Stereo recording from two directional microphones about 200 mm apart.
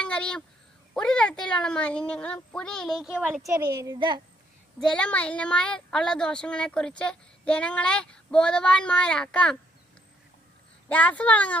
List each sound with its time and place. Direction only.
0.0 s a sound: 5° left (ahead or behind)
0.9 s speech: 5° left (ahead or behind)
3.4 s a woman's voice: 15° right (ahead or behind)
4.7 s speech: 5° left (ahead or behind)
10.9 s a woman's voice: 5° left (ahead or behind)